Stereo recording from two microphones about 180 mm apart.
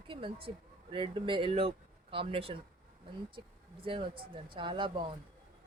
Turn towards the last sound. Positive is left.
turn(degrees=-30)  # may be behind; listen again after turning